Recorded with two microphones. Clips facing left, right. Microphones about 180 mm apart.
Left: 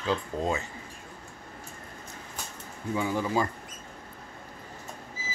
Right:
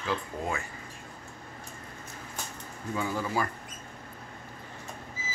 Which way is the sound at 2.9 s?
15° left (ahead or behind).